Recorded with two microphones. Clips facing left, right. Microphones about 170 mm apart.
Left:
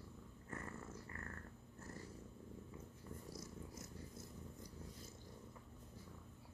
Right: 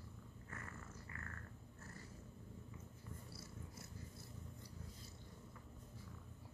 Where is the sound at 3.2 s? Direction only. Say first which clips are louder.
Left 4 dB; 40° left (ahead or behind).